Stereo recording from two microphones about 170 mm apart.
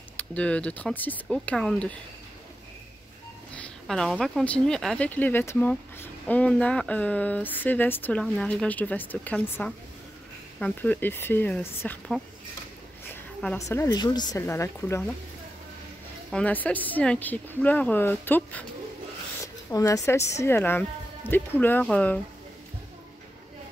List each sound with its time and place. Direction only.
0.2 s speech: 10° left (ahead or behind)
3.5 s speech: 5° left (ahead or behind)
13.1 s a sound: 10° left (ahead or behind)
13.6 s a woman's voice: 20° left (ahead or behind)
16.3 s speech: 5° left (ahead or behind)